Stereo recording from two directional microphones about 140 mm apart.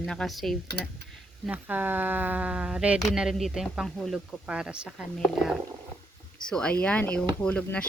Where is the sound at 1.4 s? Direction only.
10° right (ahead or behind).